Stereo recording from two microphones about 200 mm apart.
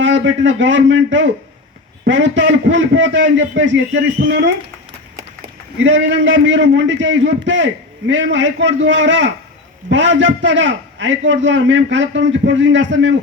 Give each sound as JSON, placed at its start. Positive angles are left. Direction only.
{"t": 0.0, "sound": "a man's voice", "side_deg": -70}
{"t": 5.8, "sound": "a man's voice", "side_deg": -70}